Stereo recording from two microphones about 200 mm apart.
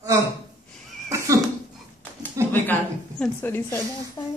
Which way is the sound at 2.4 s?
15° right (ahead or behind).